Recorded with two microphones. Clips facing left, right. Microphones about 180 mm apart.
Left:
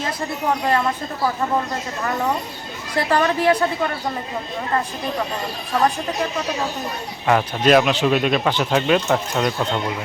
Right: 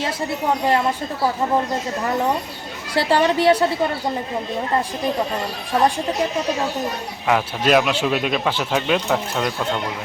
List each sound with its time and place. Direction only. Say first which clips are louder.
2.9 s a woman's voice: right 2 dB; 30° right (ahead or behind)
7.3 s speech: left 2 dB; 5° right (ahead or behind)